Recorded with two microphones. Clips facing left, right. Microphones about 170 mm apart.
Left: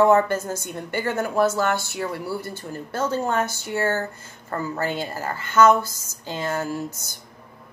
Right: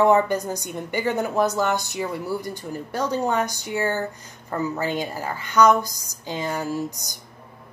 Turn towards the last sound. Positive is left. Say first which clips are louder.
# right 2 dB
turn(degrees=-15)  # may be behind; listen again after turning